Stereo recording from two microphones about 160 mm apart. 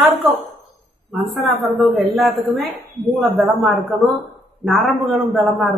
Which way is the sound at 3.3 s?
Centre (ahead or behind).